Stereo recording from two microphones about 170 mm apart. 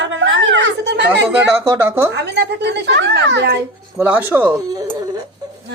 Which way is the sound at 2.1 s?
85° right.